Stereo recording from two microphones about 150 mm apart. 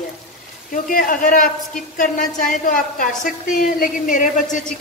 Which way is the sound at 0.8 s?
65° left (ahead or behind).